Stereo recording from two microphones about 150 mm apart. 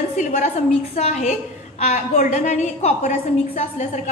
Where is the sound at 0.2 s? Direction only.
60° left (ahead or behind).